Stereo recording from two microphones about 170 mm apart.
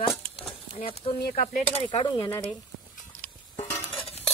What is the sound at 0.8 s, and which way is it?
Speech, 35° left (ahead or behind).